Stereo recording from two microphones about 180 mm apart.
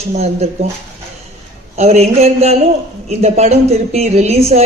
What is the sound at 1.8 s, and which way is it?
A woman's voice, 35° right (ahead or behind).